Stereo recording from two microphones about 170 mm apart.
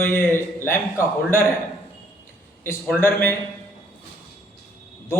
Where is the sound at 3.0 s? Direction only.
15° left (ahead or behind).